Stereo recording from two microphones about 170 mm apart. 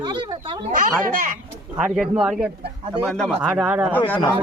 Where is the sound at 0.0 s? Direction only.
25° right (ahead or behind).